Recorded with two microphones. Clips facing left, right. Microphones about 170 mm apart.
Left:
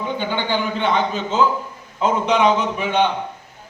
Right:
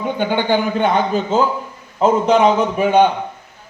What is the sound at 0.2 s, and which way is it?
Speech, 50° right (ahead or behind).